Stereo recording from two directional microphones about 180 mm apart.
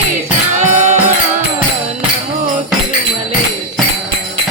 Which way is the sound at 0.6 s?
40° right (ahead or behind).